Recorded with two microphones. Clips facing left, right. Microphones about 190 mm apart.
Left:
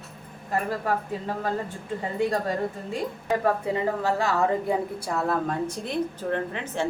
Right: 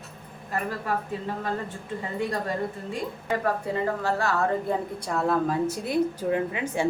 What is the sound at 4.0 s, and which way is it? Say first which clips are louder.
A woman's voice: left 2 dB; 15° left (ahead or behind).